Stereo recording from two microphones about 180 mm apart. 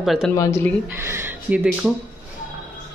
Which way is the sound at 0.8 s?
15° right (ahead or behind).